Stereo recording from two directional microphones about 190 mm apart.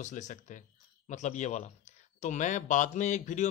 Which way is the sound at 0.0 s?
40° left (ahead or behind).